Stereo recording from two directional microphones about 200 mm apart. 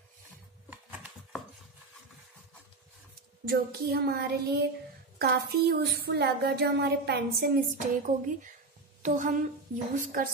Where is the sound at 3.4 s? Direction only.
50° right (ahead or behind).